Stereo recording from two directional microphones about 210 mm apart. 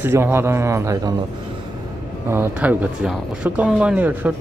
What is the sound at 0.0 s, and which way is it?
Speech, 10° right (ahead or behind).